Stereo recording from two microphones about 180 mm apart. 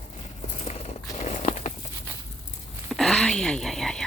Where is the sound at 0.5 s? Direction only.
35° left (ahead or behind).